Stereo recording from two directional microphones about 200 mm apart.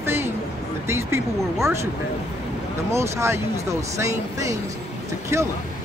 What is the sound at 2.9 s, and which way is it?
Speech, 15° right (ahead or behind).